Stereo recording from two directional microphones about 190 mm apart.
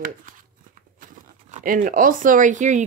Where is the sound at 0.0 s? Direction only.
45° right (ahead or behind).